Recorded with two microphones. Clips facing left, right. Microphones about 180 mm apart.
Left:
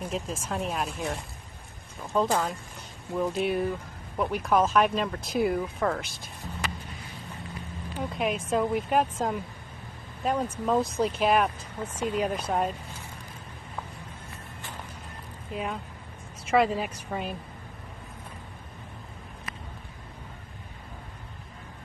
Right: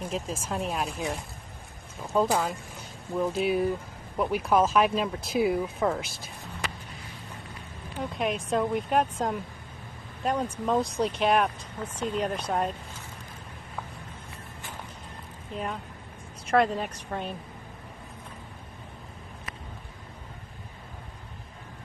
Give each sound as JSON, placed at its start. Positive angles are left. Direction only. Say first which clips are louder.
{"t": 0.0, "sound": "speech", "louder": "even", "side_deg": 0}
{"t": 8.0, "sound": "speech", "louder": "even", "side_deg": 0}
{"t": 15.5, "sound": "speech", "louder": "left 1 dB", "side_deg": 0}